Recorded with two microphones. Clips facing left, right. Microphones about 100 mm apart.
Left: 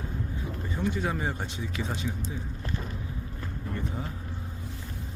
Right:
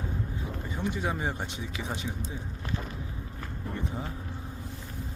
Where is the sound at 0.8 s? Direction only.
20° right (ahead or behind).